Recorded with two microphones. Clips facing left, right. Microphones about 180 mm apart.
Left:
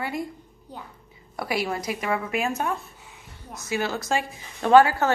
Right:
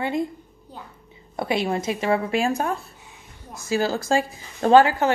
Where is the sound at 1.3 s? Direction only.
25° right (ahead or behind).